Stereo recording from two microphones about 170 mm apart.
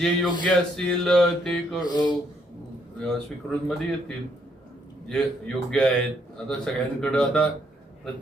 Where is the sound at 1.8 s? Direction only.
25° left (ahead or behind).